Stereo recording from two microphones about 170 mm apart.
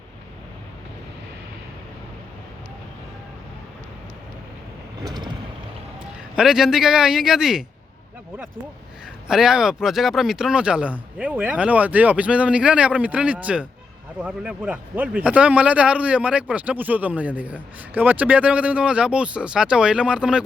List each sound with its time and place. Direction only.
5.0 s vehicle: 25° right (ahead or behind)
6.3 s a man's voice: centre (ahead or behind)
9.2 s speech: 5° right (ahead or behind)